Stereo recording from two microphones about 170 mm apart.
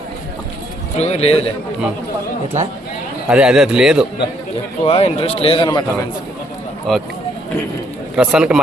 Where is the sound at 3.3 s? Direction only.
5° right (ahead or behind).